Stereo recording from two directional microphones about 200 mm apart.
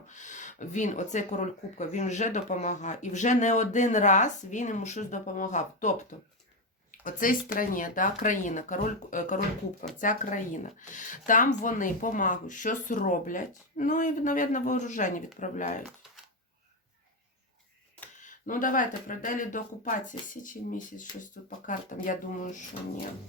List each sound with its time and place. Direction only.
0.1 s speech: 40° left (ahead or behind)
15.9 s typing: centre (ahead or behind)
18.2 s speech: 40° left (ahead or behind)